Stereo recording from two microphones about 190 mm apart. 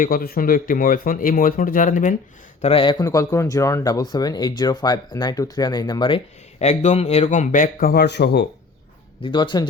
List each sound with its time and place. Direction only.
0.0 s speech: 50° left (ahead or behind)
2.6 s speech: 30° left (ahead or behind); by 8.4 s 60° left (ahead or behind)
9.2 s speech: 25° left (ahead or behind)